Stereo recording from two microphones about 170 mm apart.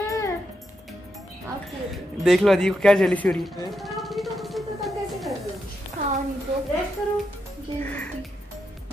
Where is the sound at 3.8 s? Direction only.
Centre (ahead or behind).